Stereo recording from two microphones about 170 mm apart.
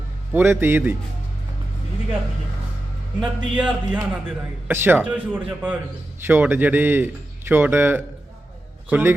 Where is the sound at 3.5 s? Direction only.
5° right (ahead or behind).